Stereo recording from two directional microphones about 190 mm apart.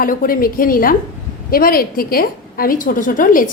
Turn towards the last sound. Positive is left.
turn(degrees=45)  # may be behind; listen again after turning